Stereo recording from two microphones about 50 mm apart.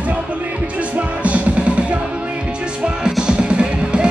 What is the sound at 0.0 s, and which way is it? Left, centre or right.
Music, right.